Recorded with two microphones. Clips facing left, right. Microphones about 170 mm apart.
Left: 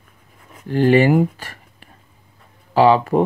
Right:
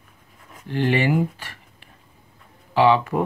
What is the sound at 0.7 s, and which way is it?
Speech, 40° left (ahead or behind).